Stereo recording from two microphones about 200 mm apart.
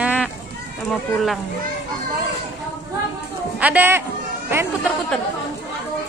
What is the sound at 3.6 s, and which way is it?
Speech, 10° right (ahead or behind).